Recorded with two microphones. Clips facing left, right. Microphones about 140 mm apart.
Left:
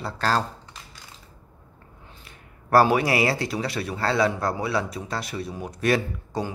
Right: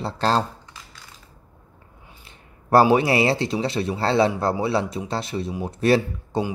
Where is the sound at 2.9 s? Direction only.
25° right (ahead or behind).